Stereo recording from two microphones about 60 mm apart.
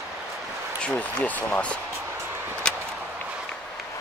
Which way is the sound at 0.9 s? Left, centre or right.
Left.